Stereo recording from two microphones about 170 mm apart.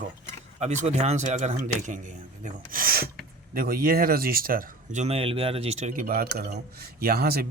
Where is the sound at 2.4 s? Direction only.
60° right (ahead or behind); by 6.1 s 40° right (ahead or behind).